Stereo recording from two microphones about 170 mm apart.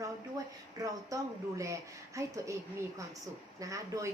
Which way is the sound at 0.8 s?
20° right (ahead or behind).